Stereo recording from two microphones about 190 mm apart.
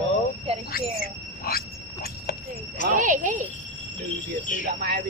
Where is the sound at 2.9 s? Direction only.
45° right (ahead or behind).